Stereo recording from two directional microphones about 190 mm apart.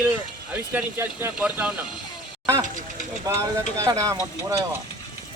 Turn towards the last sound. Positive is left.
turn(degrees=-15)  # may be behind; listen again after turning